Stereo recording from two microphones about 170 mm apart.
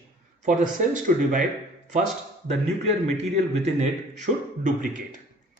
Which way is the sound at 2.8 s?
40° right (ahead or behind).